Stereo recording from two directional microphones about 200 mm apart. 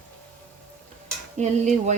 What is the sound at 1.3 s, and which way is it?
Speech, 35° right (ahead or behind).